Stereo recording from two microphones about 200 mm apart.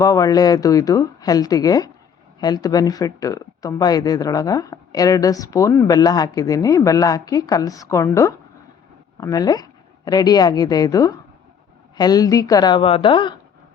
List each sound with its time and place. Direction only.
0.0 s a woman's voice: 15° left (ahead or behind)